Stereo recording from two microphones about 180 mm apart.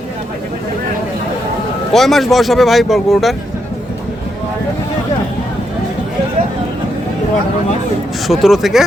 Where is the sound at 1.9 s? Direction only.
Centre (ahead or behind).